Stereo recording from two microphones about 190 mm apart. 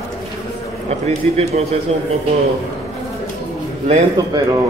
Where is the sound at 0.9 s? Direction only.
35° right (ahead or behind).